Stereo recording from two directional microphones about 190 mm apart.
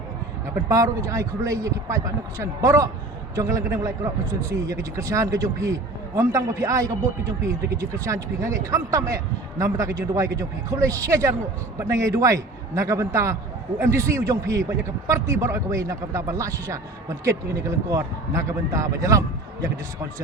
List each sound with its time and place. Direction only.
0.7 s a man's voice: 15° right (ahead or behind)